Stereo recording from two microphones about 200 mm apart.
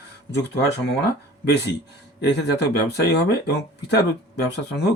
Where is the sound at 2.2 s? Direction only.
55° left (ahead or behind).